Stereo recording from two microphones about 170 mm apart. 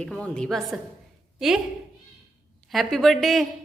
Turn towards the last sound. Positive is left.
turn(degrees=0)  # may be behind; listen again after turning